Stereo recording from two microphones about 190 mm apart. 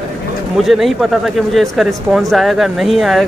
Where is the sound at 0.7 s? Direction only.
Centre (ahead or behind).